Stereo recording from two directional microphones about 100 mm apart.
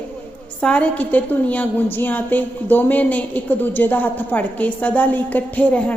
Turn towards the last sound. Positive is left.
turn(degrees=15)  # may be behind; listen again after turning